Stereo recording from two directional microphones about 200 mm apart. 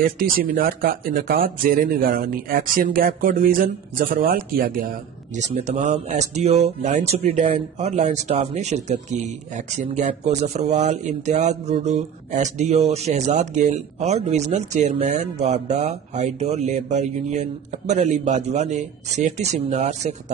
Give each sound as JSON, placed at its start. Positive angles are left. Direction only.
{"t": 0.0, "sound": "speech", "side_deg": -45}
{"t": 5.4, "sound": "speech", "side_deg": -35}